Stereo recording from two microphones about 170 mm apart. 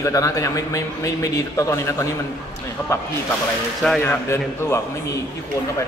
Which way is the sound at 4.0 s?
15° left (ahead or behind).